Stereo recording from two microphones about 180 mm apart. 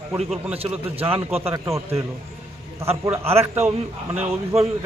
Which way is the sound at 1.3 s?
35° right (ahead or behind).